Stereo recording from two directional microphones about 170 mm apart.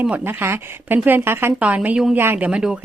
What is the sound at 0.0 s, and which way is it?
A woman's voice, 10° right (ahead or behind).